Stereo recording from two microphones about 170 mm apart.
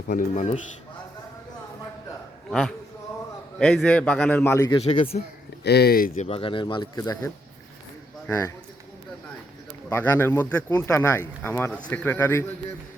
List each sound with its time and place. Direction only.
0.1 s speech: 50° left (ahead or behind)
2.5 s a man's voice: 5° left (ahead or behind); by 4.8 s 20° left (ahead or behind)
4.8 s speech: 35° left (ahead or behind)
5.6 s speech: 70° left (ahead or behind)
6.1 s speech: 35° left (ahead or behind)
8.3 s speech: 15° left (ahead or behind)
9.9 s speech: 15° left (ahead or behind)